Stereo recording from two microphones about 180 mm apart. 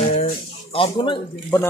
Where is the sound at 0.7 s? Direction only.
30° left (ahead or behind).